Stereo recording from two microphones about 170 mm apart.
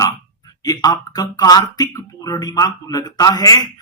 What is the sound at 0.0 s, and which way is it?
Speech, 20° left (ahead or behind).